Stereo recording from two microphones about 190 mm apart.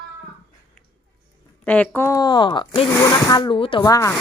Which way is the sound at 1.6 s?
10° left (ahead or behind).